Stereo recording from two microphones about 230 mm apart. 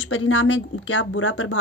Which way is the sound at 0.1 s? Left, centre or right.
Left.